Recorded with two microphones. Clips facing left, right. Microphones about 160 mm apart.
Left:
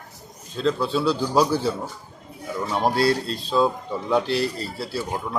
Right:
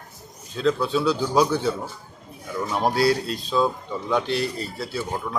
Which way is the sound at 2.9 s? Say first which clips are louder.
Right 1 dB; 30° left (ahead or behind).